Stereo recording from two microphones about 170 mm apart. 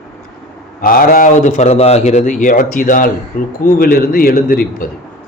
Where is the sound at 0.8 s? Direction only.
60° left (ahead or behind).